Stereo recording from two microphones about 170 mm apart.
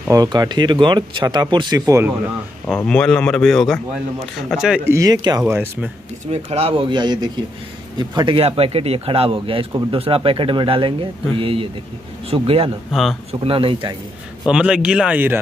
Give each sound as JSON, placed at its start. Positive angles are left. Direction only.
{"t": 0.1, "sound": "speech", "side_deg": -20}
{"t": 2.6, "sound": "speech", "side_deg": 5}
{"t": 4.9, "sound": "speech", "side_deg": -20}
{"t": 5.4, "sound": "speech", "side_deg": -10}
{"t": 6.3, "sound": "speech", "side_deg": -35}
{"t": 12.9, "sound": "speech", "side_deg": 0}
{"t": 13.3, "sound": "speech", "side_deg": -35}
{"t": 14.5, "sound": "speech", "side_deg": -5}